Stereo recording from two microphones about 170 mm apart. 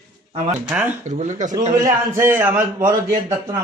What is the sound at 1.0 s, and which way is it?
Speech, 45° right (ahead or behind).